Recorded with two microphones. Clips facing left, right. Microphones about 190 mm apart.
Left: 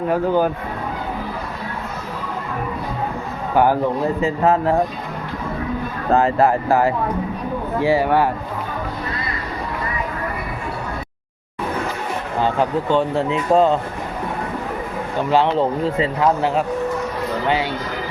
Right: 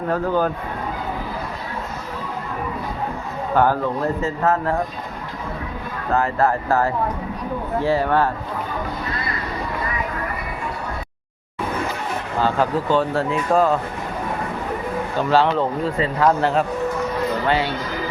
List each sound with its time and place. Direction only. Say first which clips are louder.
0.1 s speech: left 2 dB; 10° left (ahead or behind)
3.5 s speech: left 2 dB; 10° left (ahead or behind)
6.1 s speech: left 4 dB; 20° left (ahead or behind)
12.4 s speech: left 1 dB; 20° left (ahead or behind)
15.3 s speech: left 1 dB; 20° left (ahead or behind)